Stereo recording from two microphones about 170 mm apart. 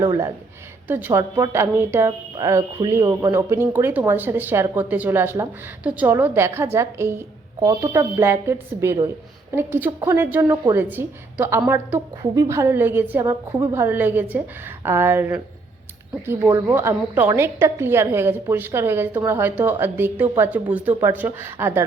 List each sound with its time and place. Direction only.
0.0 s speech: 15° right (ahead or behind)